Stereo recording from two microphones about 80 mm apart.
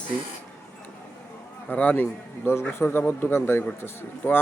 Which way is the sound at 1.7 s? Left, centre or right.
Centre.